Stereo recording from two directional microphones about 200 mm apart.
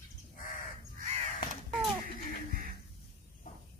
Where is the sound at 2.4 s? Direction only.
45° right (ahead or behind).